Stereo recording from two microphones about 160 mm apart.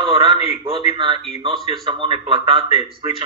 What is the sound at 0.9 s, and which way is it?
A man's voice, 30° right (ahead or behind).